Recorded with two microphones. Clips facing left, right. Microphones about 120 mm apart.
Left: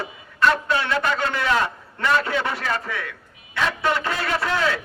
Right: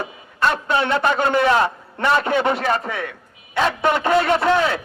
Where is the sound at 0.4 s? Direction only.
25° right (ahead or behind).